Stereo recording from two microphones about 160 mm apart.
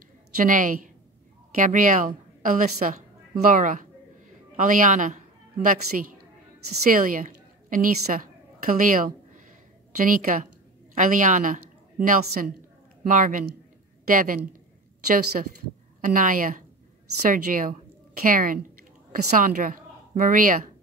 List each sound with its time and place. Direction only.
0.5 s a woman's voice: 55° right (ahead or behind)
16.0 s a woman's voice: 55° right (ahead or behind)